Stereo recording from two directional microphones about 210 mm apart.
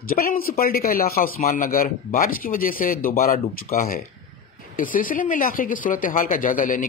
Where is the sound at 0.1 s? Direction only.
45° left (ahead or behind).